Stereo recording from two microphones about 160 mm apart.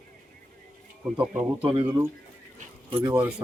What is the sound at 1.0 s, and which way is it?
Speech, 10° right (ahead or behind).